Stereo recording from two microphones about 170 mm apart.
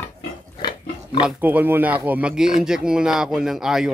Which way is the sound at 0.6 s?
25° left (ahead or behind).